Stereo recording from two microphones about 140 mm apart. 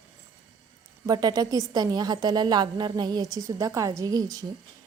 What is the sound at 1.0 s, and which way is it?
A woman's voice, 25° right (ahead or behind).